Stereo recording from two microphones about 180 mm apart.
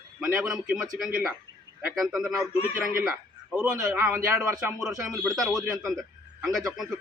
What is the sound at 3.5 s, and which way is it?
A man's voice, 5° right (ahead or behind).